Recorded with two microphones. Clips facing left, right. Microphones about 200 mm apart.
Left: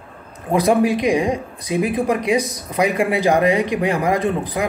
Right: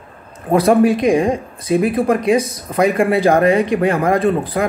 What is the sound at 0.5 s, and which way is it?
Speech, 15° left (ahead or behind).